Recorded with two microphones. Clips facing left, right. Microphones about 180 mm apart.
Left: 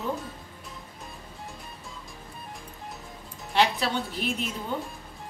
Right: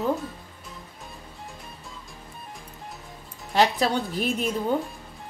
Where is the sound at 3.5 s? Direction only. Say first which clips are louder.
Right 3 dB; 40° right (ahead or behind).